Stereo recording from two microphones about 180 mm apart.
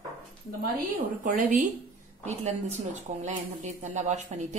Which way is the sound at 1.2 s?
45° right (ahead or behind).